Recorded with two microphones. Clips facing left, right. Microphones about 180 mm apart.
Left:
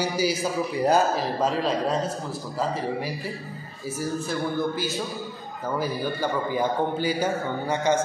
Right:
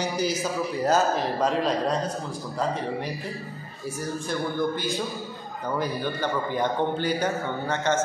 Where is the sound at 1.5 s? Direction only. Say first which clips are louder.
Even; centre (ahead or behind).